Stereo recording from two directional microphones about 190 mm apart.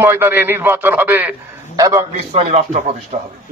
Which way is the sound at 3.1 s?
45° right (ahead or behind).